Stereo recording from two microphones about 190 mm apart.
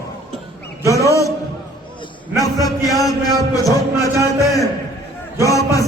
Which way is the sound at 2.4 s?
20° left (ahead or behind).